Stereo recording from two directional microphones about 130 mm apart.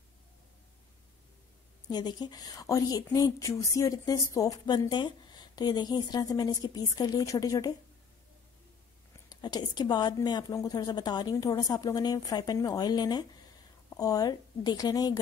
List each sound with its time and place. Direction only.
1.9 s speech: 30° left (ahead or behind)
9.3 s a woman's voice: 30° left (ahead or behind)